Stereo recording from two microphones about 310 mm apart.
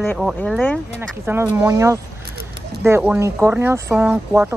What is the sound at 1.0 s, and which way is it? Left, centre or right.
Speech, centre.